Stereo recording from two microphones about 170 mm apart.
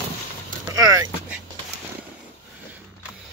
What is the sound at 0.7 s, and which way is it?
Vehicle, 20° right (ahead or behind).